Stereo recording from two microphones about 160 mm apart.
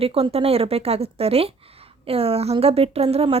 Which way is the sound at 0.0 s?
35° right (ahead or behind).